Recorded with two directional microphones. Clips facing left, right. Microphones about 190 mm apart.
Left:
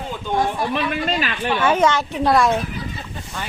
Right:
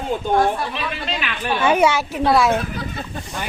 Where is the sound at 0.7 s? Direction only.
50° left (ahead or behind).